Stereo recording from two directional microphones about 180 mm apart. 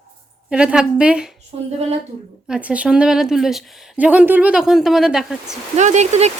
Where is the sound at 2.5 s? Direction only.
5° right (ahead or behind).